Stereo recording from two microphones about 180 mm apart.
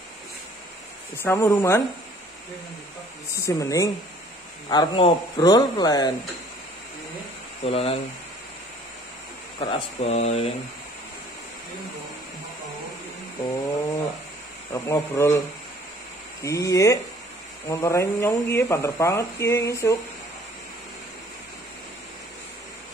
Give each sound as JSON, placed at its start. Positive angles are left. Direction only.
{"t": 1.1, "sound": "speech", "side_deg": 15}
{"t": 3.3, "sound": "speech", "side_deg": 15}
{"t": 7.6, "sound": "speech", "side_deg": 35}
{"t": 9.6, "sound": "speech", "side_deg": 30}
{"t": 14.7, "sound": "speech", "side_deg": 15}
{"t": 16.4, "sound": "speech", "side_deg": 15}